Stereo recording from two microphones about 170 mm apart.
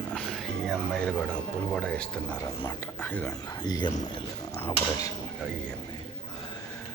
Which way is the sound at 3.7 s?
25° left (ahead or behind).